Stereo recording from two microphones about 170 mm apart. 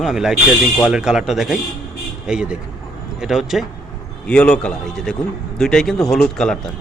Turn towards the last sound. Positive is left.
turn(degrees=5)  # may be behind; listen again after turning